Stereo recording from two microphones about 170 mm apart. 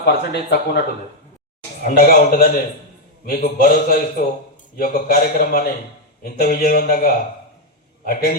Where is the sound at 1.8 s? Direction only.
55° left (ahead or behind).